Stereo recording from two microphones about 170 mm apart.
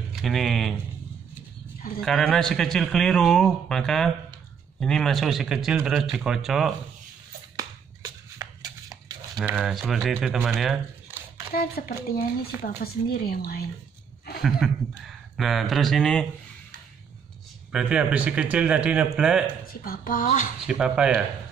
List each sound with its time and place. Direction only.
0.1 s speech: centre (ahead or behind)
2.0 s a man's voice: 5° left (ahead or behind)
7.5 s music: 20° right (ahead or behind)
9.6 s a man's voice: centre (ahead or behind)
11.1 s a sound: 10° right (ahead or behind)
11.5 s speech: 60° left (ahead or behind)
14.4 s a man's voice: centre (ahead or behind)
17.6 s speech: 5° right (ahead or behind)
19.7 s a woman's voice: 60° left (ahead or behind)
20.6 s a man's voice: 5° right (ahead or behind)